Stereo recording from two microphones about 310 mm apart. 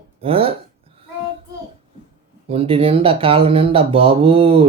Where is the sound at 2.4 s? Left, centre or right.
Centre.